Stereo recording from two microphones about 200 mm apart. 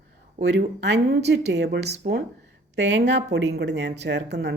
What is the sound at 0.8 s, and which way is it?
A woman's voice, 60° right (ahead or behind).